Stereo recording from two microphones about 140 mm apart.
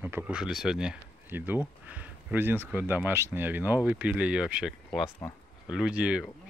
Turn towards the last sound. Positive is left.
turn(degrees=-10)  # may be behind; listen again after turning